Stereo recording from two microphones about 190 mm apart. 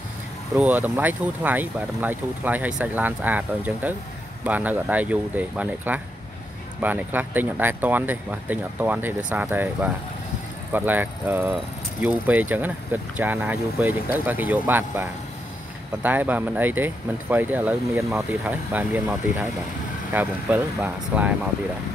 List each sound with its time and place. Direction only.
0.6 s speech: 10° right (ahead or behind)